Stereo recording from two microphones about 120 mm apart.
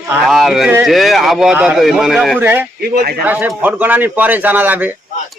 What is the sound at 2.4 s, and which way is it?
A man's voice, 15° right (ahead or behind).